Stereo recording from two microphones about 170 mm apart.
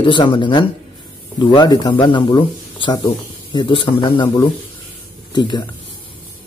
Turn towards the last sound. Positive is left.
turn(degrees=25)  # may be behind; listen again after turning